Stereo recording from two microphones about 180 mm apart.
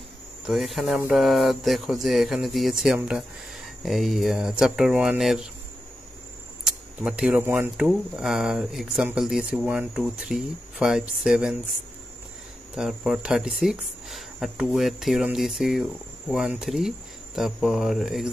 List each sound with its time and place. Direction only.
0.5 s speech: centre (ahead or behind)
6.6 s speech: 5° right (ahead or behind)
12.7 s speech: centre (ahead or behind)